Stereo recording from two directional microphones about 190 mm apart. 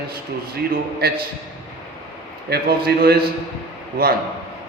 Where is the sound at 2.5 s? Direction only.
55° right (ahead or behind).